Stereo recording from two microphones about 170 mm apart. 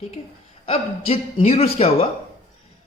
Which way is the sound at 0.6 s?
35° left (ahead or behind).